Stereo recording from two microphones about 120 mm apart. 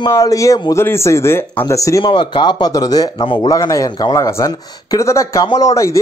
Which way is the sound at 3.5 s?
30° left (ahead or behind).